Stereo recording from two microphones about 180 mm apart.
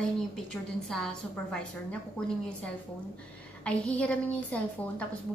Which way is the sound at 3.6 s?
5° left (ahead or behind).